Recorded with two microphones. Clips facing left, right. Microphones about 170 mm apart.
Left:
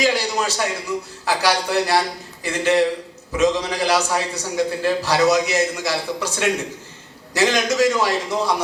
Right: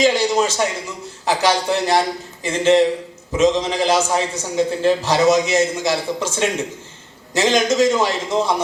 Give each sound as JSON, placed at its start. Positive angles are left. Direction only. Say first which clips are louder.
{"t": 0.0, "sound": "a man's voice", "louder": "right 4 dB", "side_deg": -20}